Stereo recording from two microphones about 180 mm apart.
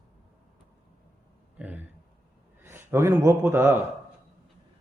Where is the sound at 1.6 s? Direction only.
5° right (ahead or behind).